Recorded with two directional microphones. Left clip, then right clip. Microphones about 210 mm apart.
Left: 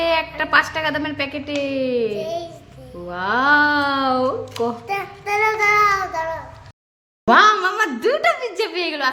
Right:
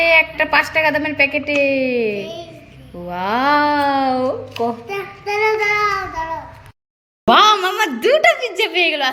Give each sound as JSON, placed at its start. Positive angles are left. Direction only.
{"t": 0.0, "sound": "a woman's voice", "side_deg": -5}
{"t": 2.1, "sound": "a child's voice", "side_deg": 40}
{"t": 3.1, "sound": "a woman's voice", "side_deg": -5}
{"t": 4.9, "sound": "child singing", "side_deg": 50}
{"t": 7.3, "sound": "a woman's voice", "side_deg": -5}